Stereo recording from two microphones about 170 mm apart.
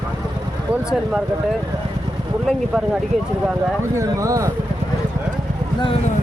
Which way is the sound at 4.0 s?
20° right (ahead or behind).